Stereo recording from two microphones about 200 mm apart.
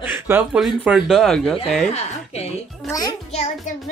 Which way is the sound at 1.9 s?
30° left (ahead or behind).